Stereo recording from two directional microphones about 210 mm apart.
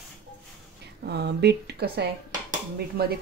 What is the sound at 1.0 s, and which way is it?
A woman's voice, 50° right (ahead or behind).